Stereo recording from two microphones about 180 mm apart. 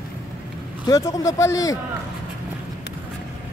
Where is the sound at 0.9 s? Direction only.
20° left (ahead or behind).